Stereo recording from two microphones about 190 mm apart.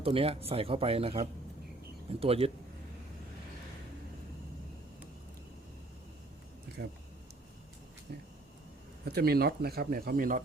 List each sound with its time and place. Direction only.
0.0 s speech: 30° right (ahead or behind)
6.8 s speech: 55° right (ahead or behind)
9.0 s speech: 55° right (ahead or behind)